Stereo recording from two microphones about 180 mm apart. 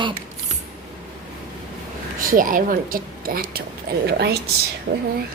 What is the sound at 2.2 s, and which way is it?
A woman's voice, 50° right (ahead or behind).